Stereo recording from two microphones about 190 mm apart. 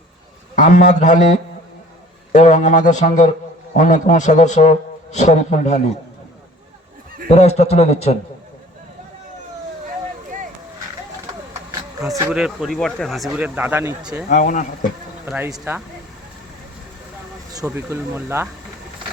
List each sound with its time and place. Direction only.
0.5 s speech: 40° left (ahead or behind)
7.3 s speech: 35° left (ahead or behind)
12.3 s speech: 5° right (ahead or behind)
14.3 s speech: 40° left (ahead or behind)
15.5 s speech: 10° right (ahead or behind)
17.7 s speech: 10° right (ahead or behind)